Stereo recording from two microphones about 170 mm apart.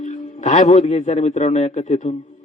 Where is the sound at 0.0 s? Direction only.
45° left (ahead or behind).